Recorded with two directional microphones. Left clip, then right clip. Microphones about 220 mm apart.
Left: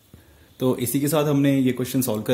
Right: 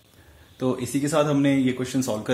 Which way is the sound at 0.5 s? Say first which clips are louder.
Left 3 dB; 40° left (ahead or behind).